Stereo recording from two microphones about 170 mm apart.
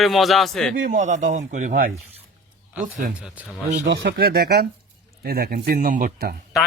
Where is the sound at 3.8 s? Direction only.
85° right; by 6.3 s 55° right (ahead or behind).